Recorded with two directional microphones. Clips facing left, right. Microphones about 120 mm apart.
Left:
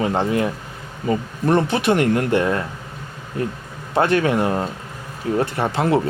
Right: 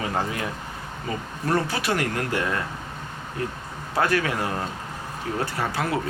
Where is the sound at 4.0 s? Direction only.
25° left (ahead or behind).